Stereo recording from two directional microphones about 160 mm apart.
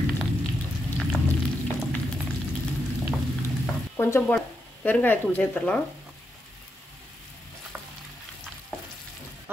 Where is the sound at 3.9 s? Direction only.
15° left (ahead or behind).